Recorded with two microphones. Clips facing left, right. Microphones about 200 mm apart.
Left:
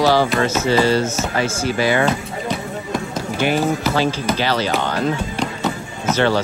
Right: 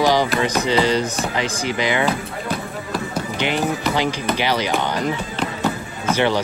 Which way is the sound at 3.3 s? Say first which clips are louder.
Left 4 dB; 20° right (ahead or behind).